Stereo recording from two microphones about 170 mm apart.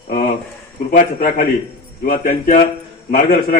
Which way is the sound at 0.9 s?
55° left (ahead or behind).